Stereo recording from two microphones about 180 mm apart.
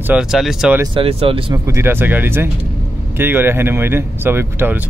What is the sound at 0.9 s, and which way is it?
Speech, 30° right (ahead or behind).